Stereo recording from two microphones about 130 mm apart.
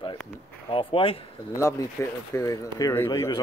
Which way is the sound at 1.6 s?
20° left (ahead or behind).